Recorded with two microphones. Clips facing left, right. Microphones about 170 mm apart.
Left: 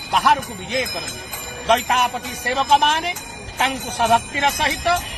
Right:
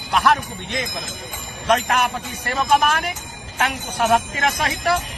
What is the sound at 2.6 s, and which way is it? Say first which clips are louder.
Jingle bell: left 1 dB; 30° left (ahead or behind).